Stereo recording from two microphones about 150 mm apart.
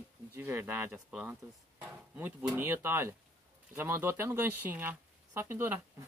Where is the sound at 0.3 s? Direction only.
15° right (ahead or behind).